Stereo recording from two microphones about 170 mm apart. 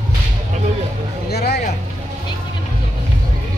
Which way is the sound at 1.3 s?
70° left (ahead or behind).